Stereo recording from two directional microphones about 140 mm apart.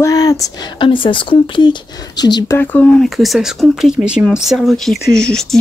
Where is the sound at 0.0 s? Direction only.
25° left (ahead or behind).